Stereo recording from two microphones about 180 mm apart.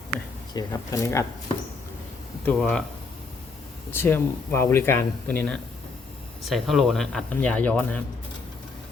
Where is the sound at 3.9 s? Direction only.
10° left (ahead or behind).